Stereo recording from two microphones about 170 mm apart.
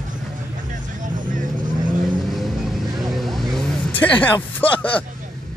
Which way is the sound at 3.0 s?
Centre (ahead or behind).